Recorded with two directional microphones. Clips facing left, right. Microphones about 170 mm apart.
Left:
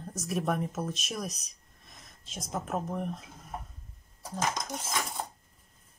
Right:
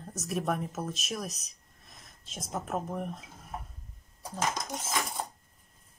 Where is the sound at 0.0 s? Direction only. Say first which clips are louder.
Left 1 dB; centre (ahead or behind).